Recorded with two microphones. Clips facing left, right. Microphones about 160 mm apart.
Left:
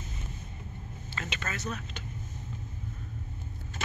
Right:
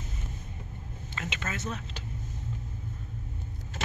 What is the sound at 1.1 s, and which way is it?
Speech, 20° right (ahead or behind).